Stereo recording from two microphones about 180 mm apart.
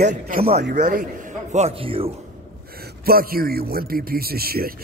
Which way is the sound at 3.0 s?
55° right (ahead or behind).